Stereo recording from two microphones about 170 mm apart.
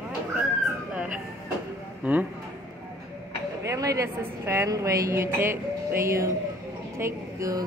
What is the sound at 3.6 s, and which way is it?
A woman's voice, 20° right (ahead or behind).